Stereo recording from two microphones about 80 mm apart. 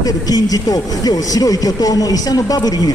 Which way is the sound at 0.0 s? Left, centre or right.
Left.